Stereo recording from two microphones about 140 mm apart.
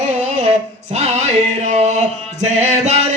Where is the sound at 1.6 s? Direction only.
55° right (ahead or behind).